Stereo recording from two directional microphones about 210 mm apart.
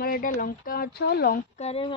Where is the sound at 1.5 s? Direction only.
30° left (ahead or behind).